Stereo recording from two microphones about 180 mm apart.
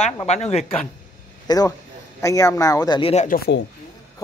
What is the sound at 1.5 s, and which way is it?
Speech, 20° left (ahead or behind).